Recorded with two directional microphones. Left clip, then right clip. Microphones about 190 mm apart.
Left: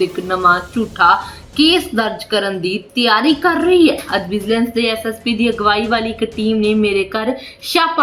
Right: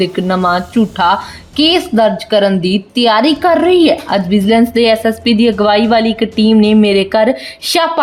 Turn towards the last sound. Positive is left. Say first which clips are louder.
# right 3 dB
turn(degrees=-55)  # may be behind; listen again after turning